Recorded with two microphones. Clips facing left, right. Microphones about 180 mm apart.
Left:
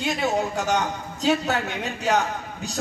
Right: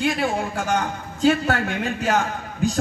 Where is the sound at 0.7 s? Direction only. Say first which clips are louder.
Right 1 dB; 55° right (ahead or behind).